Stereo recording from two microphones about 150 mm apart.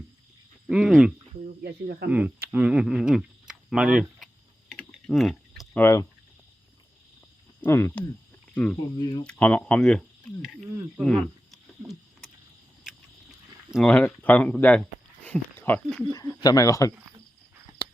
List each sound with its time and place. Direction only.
0.7 s speech: 5° right (ahead or behind)
1.5 s speech: 90° right
2.0 s speech: 10° right (ahead or behind)
4.7 s typing: 5° left (ahead or behind)
5.7 s speech: 15° left (ahead or behind)
7.6 s speech: 15° left (ahead or behind)
9.0 s speech: 30° left (ahead or behind)
9.2 s speech: 10° left (ahead or behind)
13.7 s speech: 5° left (ahead or behind)
16.1 s speech: 25° left (ahead or behind)
17.8 s a sound: 30° left (ahead or behind)